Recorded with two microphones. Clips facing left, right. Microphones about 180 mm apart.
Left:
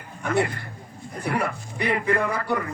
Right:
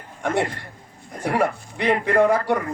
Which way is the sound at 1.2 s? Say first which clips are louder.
Right 5 dB; 90° right.